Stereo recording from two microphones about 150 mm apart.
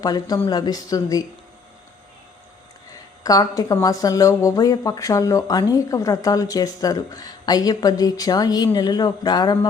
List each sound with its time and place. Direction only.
0.0 s speech: 25° left (ahead or behind)
3.2 s speech: 25° left (ahead or behind)